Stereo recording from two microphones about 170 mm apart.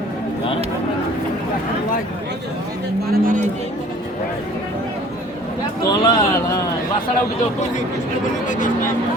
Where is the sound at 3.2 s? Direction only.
50° right (ahead or behind).